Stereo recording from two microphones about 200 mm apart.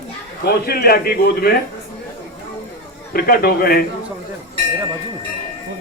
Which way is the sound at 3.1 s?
50° left (ahead or behind).